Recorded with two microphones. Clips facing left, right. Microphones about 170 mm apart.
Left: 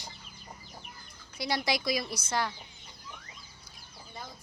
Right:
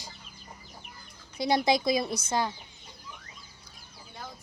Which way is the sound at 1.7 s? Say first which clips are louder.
Right 6 dB; 25° right (ahead or behind).